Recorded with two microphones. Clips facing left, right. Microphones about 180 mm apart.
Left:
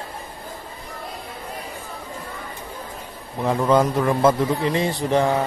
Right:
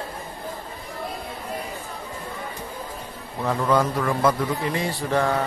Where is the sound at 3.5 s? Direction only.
20° left (ahead or behind).